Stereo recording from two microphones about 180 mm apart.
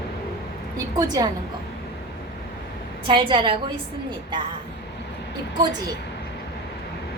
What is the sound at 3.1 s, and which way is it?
Speech, 25° right (ahead or behind).